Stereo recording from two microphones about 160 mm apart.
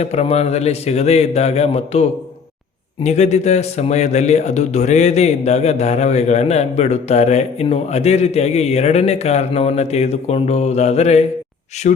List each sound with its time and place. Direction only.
0.0 s a man's voice: 40° left (ahead or behind)
11.9 s speech: 55° left (ahead or behind)